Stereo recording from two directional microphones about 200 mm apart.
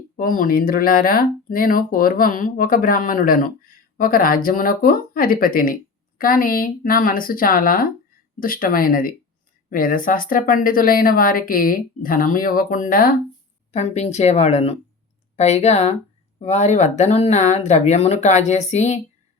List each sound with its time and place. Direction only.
0.2 s speech: 45° left (ahead or behind)
13.7 s speech: 35° left (ahead or behind)